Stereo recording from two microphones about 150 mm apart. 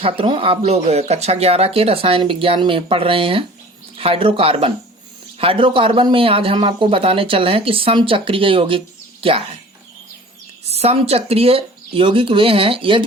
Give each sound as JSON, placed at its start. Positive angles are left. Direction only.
{"t": 0.0, "sound": "speech", "side_deg": -35}
{"t": 10.6, "sound": "speech", "side_deg": -45}